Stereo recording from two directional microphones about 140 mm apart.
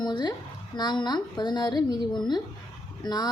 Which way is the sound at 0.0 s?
30° left (ahead or behind).